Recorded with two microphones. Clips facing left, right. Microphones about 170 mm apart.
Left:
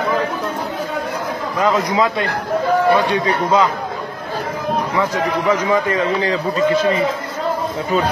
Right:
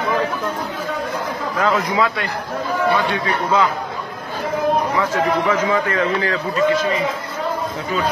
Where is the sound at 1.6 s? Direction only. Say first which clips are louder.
Left 2 dB; 20° left (ahead or behind).